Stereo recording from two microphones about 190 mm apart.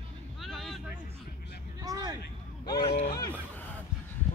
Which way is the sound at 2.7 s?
25° left (ahead or behind).